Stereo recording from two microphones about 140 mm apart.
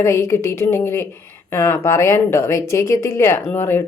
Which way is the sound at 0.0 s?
20° left (ahead or behind).